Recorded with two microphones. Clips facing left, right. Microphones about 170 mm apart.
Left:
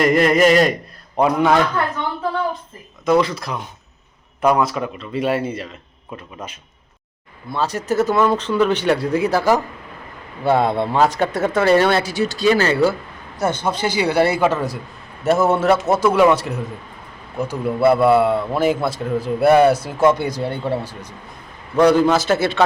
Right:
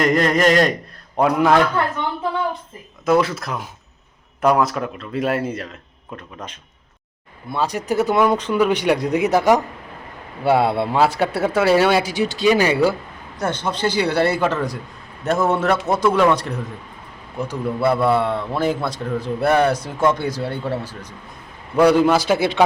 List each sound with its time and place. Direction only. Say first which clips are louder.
0.0 s a man's voice: left 2 dB; 5° left (ahead or behind)
3.1 s a man's voice: left 1 dB; 5° right (ahead or behind)
7.5 s speech: left 1 dB; 10° right (ahead or behind)
13.4 s a man's voice: left 2 dB; 10° left (ahead or behind)
21.8 s speech: even; 10° right (ahead or behind)